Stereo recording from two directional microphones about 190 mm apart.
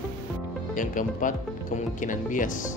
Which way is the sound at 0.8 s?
45° left (ahead or behind).